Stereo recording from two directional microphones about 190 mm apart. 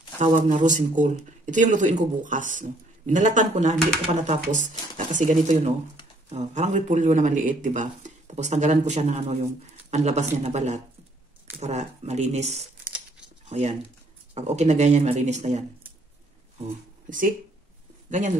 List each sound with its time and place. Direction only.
0.2 s a man's voice: 40° right (ahead or behind)